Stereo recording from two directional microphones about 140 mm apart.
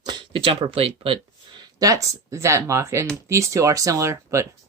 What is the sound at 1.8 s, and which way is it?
Speech, 25° right (ahead or behind).